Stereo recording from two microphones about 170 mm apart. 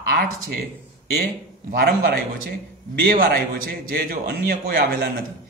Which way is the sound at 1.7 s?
65° right (ahead or behind).